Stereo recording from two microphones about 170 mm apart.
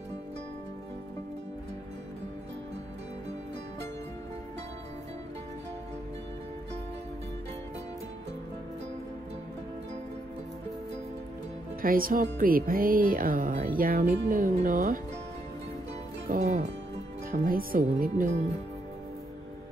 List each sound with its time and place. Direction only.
11.8 s speech: 55° right (ahead or behind)
16.3 s speech: 45° right (ahead or behind)
17.3 s speech: 55° right (ahead or behind)